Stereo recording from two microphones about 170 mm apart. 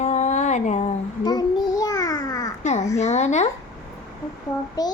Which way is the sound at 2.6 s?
40° left (ahead or behind).